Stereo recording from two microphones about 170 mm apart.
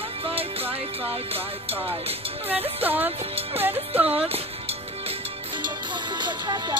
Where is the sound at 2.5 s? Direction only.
10° right (ahead or behind).